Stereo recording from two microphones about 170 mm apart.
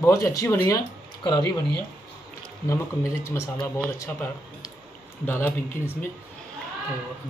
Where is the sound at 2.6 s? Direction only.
15° left (ahead or behind).